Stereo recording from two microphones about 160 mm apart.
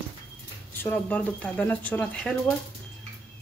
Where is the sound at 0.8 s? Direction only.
10° left (ahead or behind).